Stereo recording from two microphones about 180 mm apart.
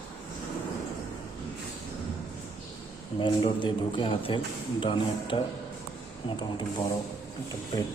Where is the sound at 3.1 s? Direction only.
25° left (ahead or behind).